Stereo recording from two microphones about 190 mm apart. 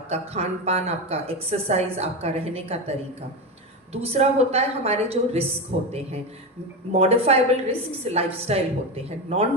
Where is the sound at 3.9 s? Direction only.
30° right (ahead or behind).